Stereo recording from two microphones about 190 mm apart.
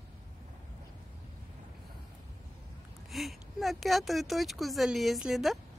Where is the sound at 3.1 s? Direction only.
Centre (ahead or behind).